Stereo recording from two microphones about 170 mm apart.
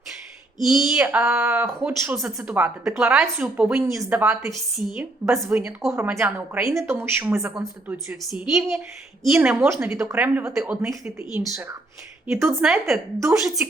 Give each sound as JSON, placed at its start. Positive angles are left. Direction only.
{"t": 0.6, "sound": "a woman's voice", "side_deg": -5}
{"t": 3.8, "sound": "a woman's voice", "side_deg": -15}
{"t": 8.3, "sound": "a woman's voice", "side_deg": -5}
{"t": 12.6, "sound": "a woman's voice", "side_deg": 0}